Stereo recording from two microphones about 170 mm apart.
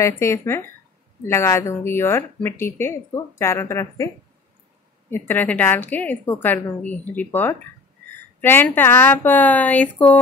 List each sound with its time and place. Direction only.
0.0 s speech: 15° left (ahead or behind)
5.1 s speech: 10° left (ahead or behind)
8.4 s speech: 10° left (ahead or behind)